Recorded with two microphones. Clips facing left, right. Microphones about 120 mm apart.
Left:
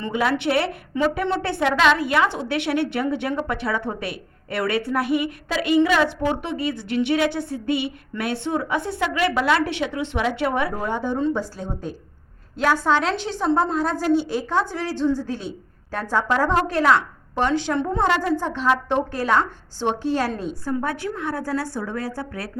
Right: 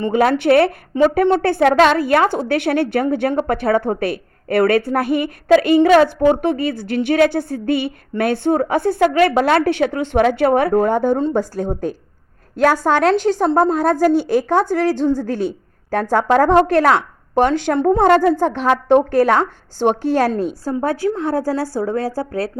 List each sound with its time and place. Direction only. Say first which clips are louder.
0.1 s a woman's voice: right 7 dB; 45° right (ahead or behind)